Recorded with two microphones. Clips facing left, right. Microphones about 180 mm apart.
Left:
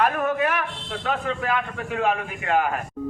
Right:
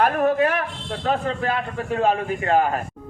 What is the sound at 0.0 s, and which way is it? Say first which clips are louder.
A man's voice: right 4 dB; 35° right (ahead or behind).